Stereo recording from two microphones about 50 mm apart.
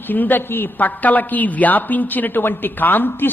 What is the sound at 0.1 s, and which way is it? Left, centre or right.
A woman's voice, left.